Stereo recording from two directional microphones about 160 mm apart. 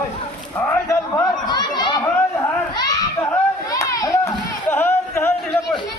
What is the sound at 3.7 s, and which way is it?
Run, 20° left (ahead or behind).